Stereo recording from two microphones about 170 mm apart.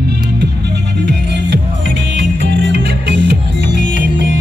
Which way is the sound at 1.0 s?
90° right.